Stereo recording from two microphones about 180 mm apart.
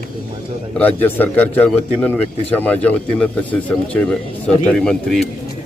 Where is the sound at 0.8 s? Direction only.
10° left (ahead or behind).